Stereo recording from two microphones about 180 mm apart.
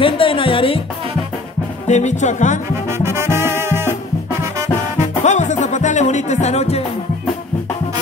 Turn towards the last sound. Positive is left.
turn(degrees=35)  # may be behind; listen again after turning